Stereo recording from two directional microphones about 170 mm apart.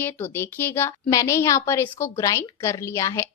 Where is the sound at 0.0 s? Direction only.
15° left (ahead or behind).